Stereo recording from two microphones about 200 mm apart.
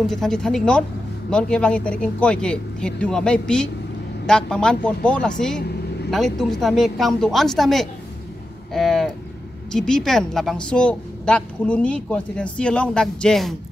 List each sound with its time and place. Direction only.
0.0 s a woman's voice: centre (ahead or behind)